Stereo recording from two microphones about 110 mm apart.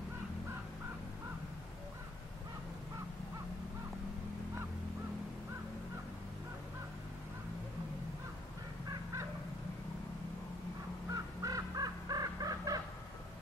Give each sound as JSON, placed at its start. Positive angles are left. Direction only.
{"t": 11.1, "sound": "crow", "side_deg": -35}